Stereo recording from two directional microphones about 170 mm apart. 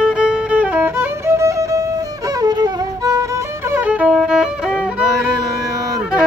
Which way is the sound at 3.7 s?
10° right (ahead or behind).